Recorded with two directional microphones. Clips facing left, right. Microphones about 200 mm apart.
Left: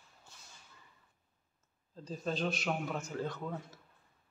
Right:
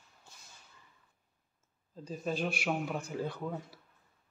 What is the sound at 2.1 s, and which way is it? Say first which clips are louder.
A man's voice: right 1 dB; 10° right (ahead or behind).